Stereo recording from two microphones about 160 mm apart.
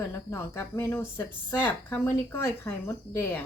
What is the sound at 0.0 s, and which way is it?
Speech, 15° left (ahead or behind).